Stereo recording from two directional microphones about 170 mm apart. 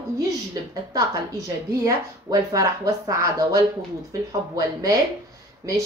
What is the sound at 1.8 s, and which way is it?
A woman's voice, 20° right (ahead or behind).